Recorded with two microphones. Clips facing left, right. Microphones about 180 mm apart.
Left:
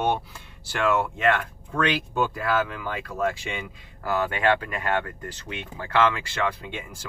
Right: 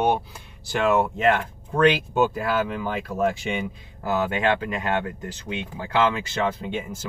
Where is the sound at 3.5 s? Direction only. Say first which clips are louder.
Right 7 dB; 20° right (ahead or behind).